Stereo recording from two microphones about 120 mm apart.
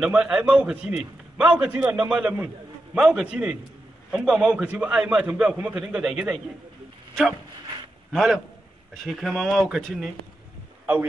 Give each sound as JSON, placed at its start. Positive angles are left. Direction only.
{"t": 0.0, "sound": "a man's voice", "side_deg": -5}
{"t": 8.1, "sound": "a man's voice", "side_deg": 0}